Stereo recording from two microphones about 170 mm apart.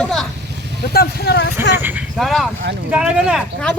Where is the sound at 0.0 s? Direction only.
Centre (ahead or behind).